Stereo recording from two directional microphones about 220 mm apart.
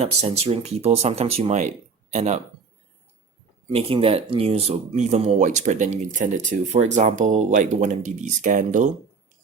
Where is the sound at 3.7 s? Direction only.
25° right (ahead or behind).